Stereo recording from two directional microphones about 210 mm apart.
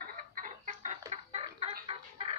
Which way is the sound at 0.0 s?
40° right (ahead or behind).